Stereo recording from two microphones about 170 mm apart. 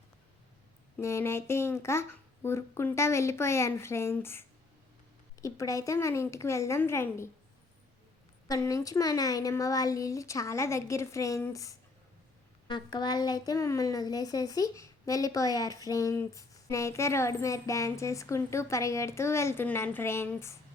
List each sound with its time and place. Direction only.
0.9 s a woman's voice: 15° left (ahead or behind)
8.4 s a woman's voice: 20° left (ahead or behind)